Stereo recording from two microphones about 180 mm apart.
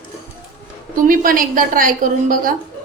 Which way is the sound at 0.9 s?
50° right (ahead or behind).